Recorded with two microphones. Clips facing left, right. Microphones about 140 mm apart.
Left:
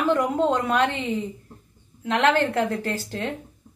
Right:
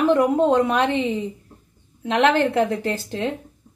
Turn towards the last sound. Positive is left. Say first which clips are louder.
# right 3 dB
turn(degrees=-15)  # may be behind; listen again after turning